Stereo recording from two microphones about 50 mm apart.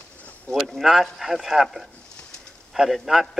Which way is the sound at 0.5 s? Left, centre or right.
Centre.